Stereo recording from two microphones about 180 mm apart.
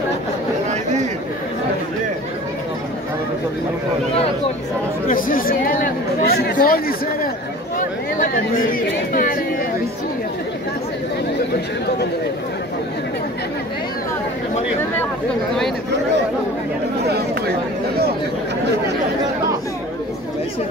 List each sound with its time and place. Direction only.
5.0 s speech: 50° left (ahead or behind)
8.7 s speech: 50° left (ahead or behind)